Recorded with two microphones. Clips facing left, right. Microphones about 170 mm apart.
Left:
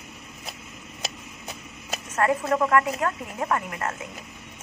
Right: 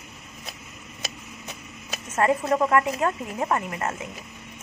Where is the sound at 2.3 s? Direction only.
10° right (ahead or behind).